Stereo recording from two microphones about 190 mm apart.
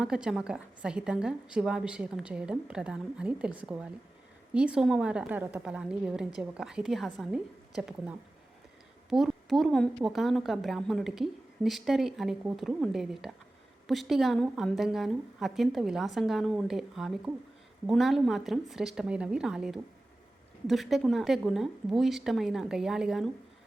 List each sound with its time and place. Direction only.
0.0 s a woman's voice: 5° right (ahead or behind)